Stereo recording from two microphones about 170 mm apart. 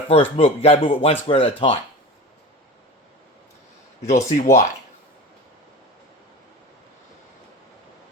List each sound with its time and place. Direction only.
0.1 s speech: 35° left (ahead or behind)
4.4 s speech: 45° left (ahead or behind)